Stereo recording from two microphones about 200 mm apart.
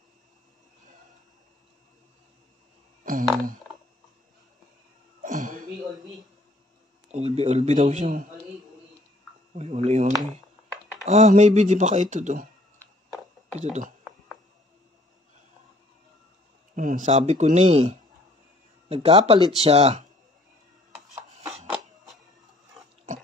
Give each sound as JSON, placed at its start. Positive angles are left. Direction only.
{"t": 3.1, "sound": "speech", "side_deg": -45}
{"t": 5.2, "sound": "a sound", "side_deg": -40}
{"t": 7.1, "sound": "speech", "side_deg": -30}
{"t": 9.6, "sound": "a sound", "side_deg": -35}
{"t": 11.1, "sound": "speech", "side_deg": -35}
{"t": 16.7, "sound": "speech", "side_deg": -40}
{"t": 18.9, "sound": "speech", "side_deg": -30}
{"t": 21.1, "sound": "music", "side_deg": -15}
{"t": 21.5, "sound": "a sound", "side_deg": 0}